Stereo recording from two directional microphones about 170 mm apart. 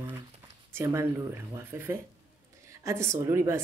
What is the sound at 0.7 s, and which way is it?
A woman's voice, 15° right (ahead or behind).